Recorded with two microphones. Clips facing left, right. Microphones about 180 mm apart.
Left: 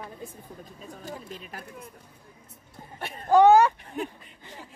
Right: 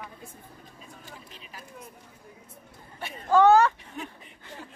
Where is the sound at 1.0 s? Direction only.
45° left (ahead or behind).